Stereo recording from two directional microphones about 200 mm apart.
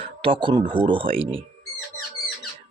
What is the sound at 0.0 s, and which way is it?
Speech, 25° right (ahead or behind).